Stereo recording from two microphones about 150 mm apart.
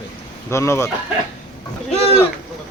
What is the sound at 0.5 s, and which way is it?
Speech, 20° left (ahead or behind).